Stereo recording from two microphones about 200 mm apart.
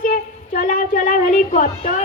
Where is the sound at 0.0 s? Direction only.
45° left (ahead or behind).